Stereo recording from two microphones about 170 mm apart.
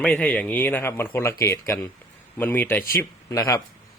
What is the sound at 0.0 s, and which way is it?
A man's voice, 5° left (ahead or behind).